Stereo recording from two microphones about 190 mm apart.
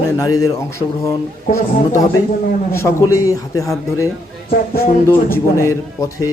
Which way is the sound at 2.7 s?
15° left (ahead or behind).